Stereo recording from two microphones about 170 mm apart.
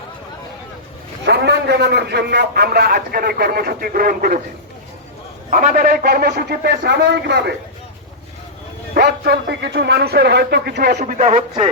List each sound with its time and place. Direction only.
1.2 s a man's voice: 80° right; by 4.4 s 60° right (ahead or behind)
5.5 s a man's voice: 50° right (ahead or behind); by 7.5 s 80° right
9.0 s a man's voice: 85° right; by 10.9 s 70° right (ahead or behind)
10.9 s speech: 45° right (ahead or behind)